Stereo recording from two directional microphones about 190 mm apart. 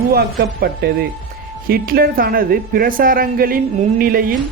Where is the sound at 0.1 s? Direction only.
55° right (ahead or behind).